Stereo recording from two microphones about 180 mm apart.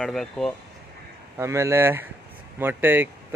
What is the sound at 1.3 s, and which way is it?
Speech, 15° right (ahead or behind).